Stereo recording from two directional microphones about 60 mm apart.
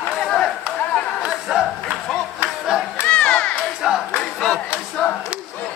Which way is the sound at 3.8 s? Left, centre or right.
Centre.